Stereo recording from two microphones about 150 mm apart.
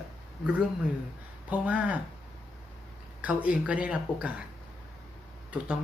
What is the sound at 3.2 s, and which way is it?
Speech, 10° right (ahead or behind).